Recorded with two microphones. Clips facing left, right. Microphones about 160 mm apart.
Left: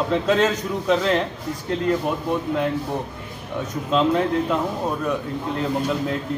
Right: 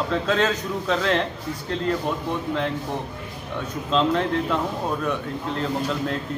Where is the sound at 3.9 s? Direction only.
10° left (ahead or behind).